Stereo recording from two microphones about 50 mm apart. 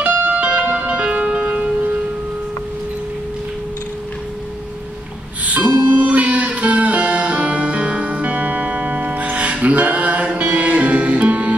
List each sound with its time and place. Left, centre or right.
0.0 s music: right
5.4 s music: right